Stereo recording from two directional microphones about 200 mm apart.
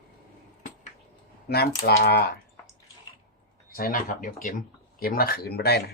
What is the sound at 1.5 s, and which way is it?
Speech, 55° left (ahead or behind).